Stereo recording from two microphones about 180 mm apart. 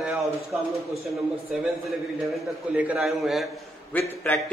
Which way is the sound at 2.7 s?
5° right (ahead or behind).